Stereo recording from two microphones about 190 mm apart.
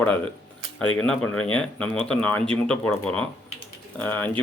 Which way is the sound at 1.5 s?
5° left (ahead or behind).